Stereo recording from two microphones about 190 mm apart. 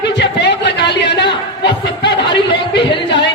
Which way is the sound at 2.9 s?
25° left (ahead or behind).